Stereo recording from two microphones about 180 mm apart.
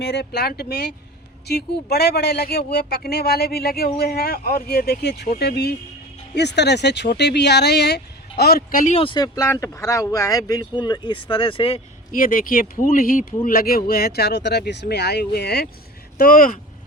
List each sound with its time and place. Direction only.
0.0 s speech: 65° left (ahead or behind); by 9.0 s 50° left (ahead or behind)
9.0 s speech: 25° left (ahead or behind)
12.1 s speech: 50° left (ahead or behind)
16.1 s speech: 50° left (ahead or behind)